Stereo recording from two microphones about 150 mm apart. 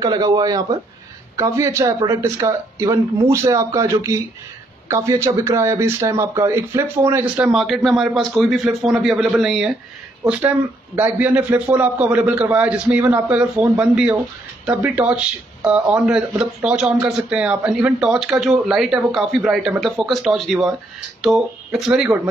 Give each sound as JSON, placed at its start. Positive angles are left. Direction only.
{"t": 0.0, "sound": "speech", "side_deg": -25}